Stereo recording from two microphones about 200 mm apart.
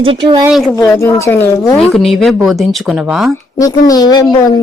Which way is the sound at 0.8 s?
15° left (ahead or behind).